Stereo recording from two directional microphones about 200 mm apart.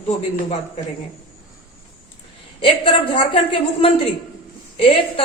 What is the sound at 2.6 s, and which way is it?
A woman's voice, 25° left (ahead or behind).